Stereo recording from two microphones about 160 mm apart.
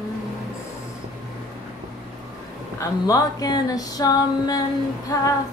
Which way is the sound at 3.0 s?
25° left (ahead or behind).